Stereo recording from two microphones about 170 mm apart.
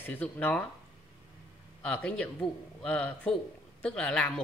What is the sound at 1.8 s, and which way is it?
A woman's voice, 5° left (ahead or behind).